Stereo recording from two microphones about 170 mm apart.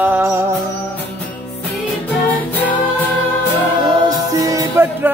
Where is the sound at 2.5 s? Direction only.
10° left (ahead or behind).